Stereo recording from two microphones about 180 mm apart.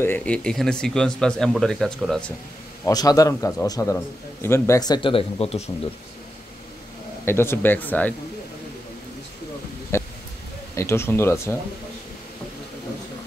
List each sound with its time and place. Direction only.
0.0 s speech: 10° left (ahead or behind)
2.8 s a man's voice: 20° left (ahead or behind)
7.2 s speech: 15° left (ahead or behind)
9.9 s a sound: 15° left (ahead or behind)
10.7 s speech: 15° left (ahead or behind)